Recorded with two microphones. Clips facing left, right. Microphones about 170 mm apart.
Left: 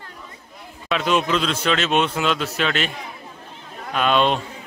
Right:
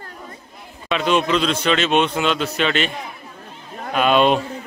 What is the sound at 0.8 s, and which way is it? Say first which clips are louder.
A man's voice: right 2 dB; 5° left (ahead or behind).